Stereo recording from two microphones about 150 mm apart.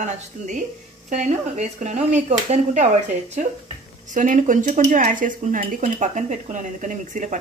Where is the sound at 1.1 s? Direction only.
50° right (ahead or behind).